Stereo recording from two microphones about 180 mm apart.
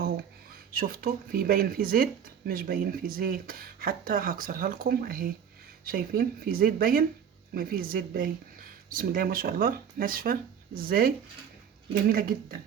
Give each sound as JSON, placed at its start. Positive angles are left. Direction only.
{"t": 0.7, "sound": "speech", "side_deg": -55}